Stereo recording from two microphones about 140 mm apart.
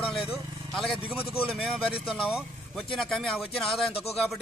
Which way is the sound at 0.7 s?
Centre (ahead or behind).